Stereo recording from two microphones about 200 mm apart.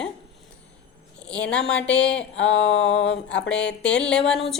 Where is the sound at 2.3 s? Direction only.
65° left (ahead or behind).